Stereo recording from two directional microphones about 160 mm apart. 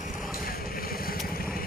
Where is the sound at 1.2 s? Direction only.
65° left (ahead or behind).